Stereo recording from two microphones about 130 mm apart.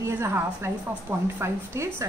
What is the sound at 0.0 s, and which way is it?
Speech, 20° right (ahead or behind).